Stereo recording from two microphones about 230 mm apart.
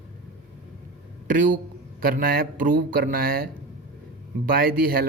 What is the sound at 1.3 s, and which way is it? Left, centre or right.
A man's voice, right.